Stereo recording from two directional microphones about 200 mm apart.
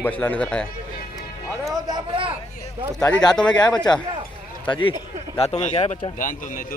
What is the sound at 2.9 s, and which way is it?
Speech, 5° left (ahead or behind).